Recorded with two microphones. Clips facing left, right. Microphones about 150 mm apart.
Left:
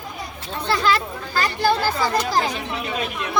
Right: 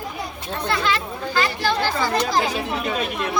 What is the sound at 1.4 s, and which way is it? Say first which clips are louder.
Chatter: left 2 dB; 45° left (ahead or behind).